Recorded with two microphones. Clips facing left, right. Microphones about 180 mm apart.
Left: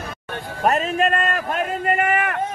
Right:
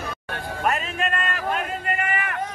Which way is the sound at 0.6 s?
40° left (ahead or behind).